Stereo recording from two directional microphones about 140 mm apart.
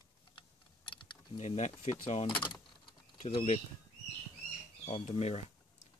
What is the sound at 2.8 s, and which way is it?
Typing, 35° left (ahead or behind).